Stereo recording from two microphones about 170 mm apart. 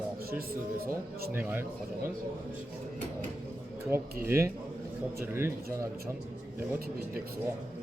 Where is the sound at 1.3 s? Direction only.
10° right (ahead or behind).